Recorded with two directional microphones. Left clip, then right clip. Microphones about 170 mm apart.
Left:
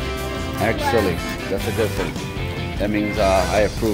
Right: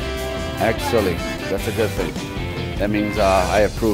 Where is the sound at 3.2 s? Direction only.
20° right (ahead or behind).